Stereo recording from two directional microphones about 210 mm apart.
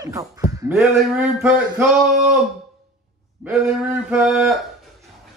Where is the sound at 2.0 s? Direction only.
Centre (ahead or behind).